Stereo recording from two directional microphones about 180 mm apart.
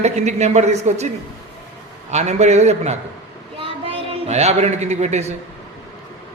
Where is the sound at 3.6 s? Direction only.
30° right (ahead or behind).